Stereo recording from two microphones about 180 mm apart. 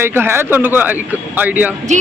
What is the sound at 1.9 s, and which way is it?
Speech, 40° right (ahead or behind).